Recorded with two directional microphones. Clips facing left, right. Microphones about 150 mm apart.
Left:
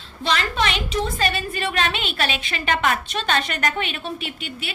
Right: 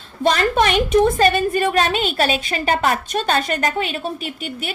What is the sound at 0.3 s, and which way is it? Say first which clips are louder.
A woman's voice: right 6 dB; 45° right (ahead or behind).